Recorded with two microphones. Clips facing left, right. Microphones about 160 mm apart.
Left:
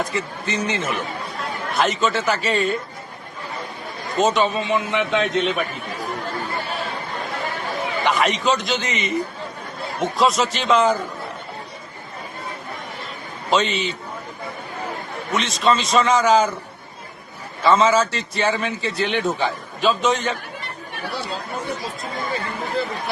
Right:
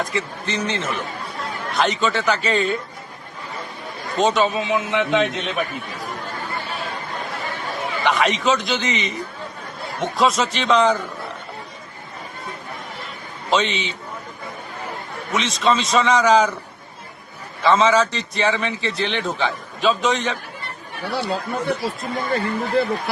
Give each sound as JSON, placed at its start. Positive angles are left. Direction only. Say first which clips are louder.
{"t": 0.0, "sound": "a man's voice", "louder": "even", "side_deg": 0}
{"t": 4.2, "sound": "a man's voice", "louder": "even", "side_deg": 0}
{"t": 8.0, "sound": "a man's voice", "louder": "right 1 dB", "side_deg": 0}
{"t": 13.5, "sound": "a man's voice", "louder": "left 1 dB", "side_deg": 0}
{"t": 15.3, "sound": "a man's voice", "louder": "even", "side_deg": 0}
{"t": 17.6, "sound": "a man's voice", "louder": "even", "side_deg": 0}
{"t": 21.0, "sound": "speech", "louder": "right 5 dB", "side_deg": -65}